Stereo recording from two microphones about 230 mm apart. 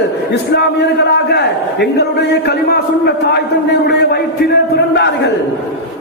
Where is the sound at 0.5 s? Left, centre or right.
Left.